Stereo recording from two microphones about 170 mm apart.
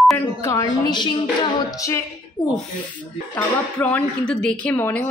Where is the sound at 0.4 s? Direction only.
20° left (ahead or behind).